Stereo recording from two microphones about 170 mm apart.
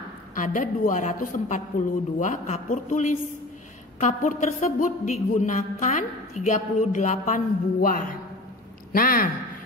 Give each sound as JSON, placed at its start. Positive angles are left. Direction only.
{"t": 0.3, "sound": "a woman's voice", "side_deg": 50}